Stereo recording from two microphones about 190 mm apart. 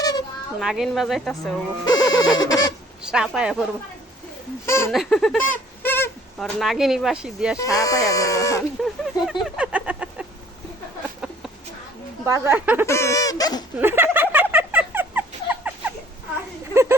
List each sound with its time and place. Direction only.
0.0 s baby cry: 20° left (ahead or behind)
0.6 s speech: centre (ahead or behind)
1.8 s owl: 20° left (ahead or behind)
3.0 s speech: 5° right (ahead or behind)
4.6 s speech: 15° left (ahead or behind)
4.9 s a sound: centre (ahead or behind)
6.6 s speech: centre (ahead or behind)
7.6 s speech: 20° left (ahead or behind)
8.8 s a sound: centre (ahead or behind)
12.2 s speech: 10° right (ahead or behind)
12.8 s speech: 15° left (ahead or behind)
13.7 s a sound: 10° right (ahead or behind)
16.7 s a sound: 15° right (ahead or behind)